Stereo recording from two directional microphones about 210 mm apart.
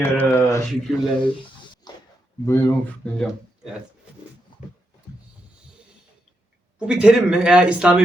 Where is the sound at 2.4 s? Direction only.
15° left (ahead or behind).